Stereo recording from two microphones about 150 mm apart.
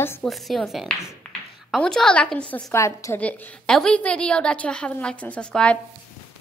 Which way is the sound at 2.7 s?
20° left (ahead or behind).